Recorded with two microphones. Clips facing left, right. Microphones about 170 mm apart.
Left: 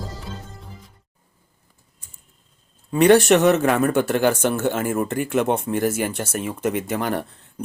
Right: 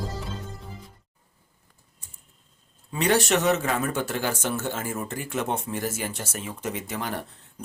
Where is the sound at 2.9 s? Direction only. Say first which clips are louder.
Left 9 dB; 55° left (ahead or behind).